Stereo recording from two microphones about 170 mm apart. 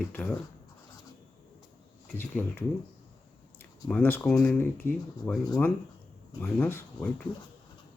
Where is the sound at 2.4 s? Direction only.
10° left (ahead or behind).